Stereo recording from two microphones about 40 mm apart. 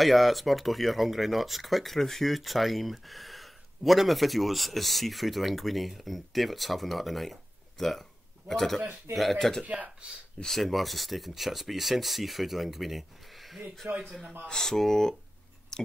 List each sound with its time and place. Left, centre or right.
0.0 s speech: centre
9.7 s speech: right
10.4 s speech: centre
14.5 s speech: centre
15.7 s a sound: centre